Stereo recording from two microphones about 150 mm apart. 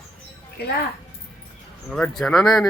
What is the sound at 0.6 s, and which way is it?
Speech, 90° left.